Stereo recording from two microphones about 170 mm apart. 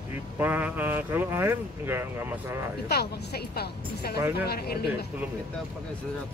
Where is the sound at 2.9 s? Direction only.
70° left (ahead or behind).